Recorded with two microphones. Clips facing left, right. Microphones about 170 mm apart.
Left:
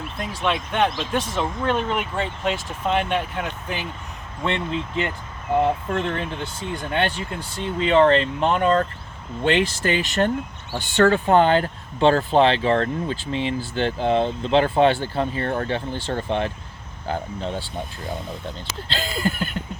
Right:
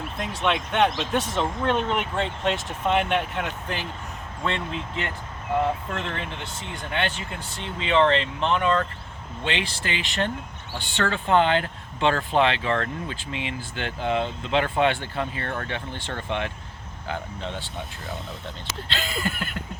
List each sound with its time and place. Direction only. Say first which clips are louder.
0.2 s speech: left 1 dB; centre (ahead or behind)
4.4 s speech: left 4 dB; 30° left (ahead or behind)